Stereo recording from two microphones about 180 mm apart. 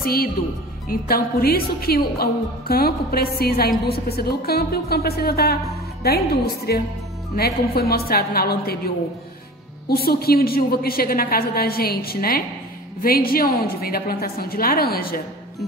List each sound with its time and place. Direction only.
0.0 s a woman's voice: 55° left (ahead or behind)